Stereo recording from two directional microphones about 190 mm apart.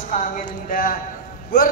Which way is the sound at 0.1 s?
45° left (ahead or behind).